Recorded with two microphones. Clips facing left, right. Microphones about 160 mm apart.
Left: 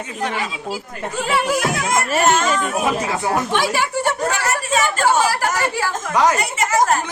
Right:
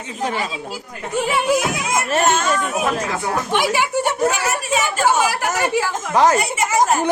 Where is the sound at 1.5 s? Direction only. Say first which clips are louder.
Even; 15° right (ahead or behind).